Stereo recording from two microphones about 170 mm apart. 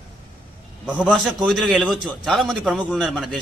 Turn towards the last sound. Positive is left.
turn(degrees=5)  # may be behind; listen again after turning